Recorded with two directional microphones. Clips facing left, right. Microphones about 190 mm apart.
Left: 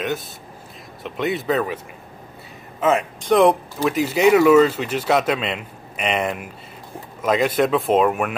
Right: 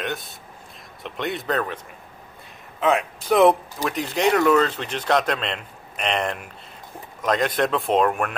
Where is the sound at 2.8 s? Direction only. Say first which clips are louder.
Left 2 dB; centre (ahead or behind).